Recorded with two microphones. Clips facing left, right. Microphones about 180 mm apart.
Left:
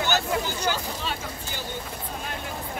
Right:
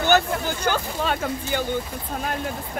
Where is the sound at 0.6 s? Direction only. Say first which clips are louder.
Right 4 dB; 55° right (ahead or behind).